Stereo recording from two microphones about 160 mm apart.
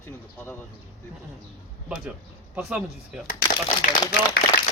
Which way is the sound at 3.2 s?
55° left (ahead or behind).